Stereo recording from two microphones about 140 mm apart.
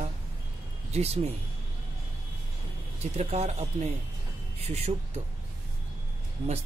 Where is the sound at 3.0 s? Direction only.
50° right (ahead or behind).